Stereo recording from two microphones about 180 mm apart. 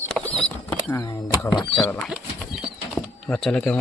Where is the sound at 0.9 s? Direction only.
15° left (ahead or behind).